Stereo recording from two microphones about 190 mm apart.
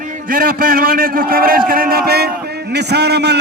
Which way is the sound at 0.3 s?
50° right (ahead or behind).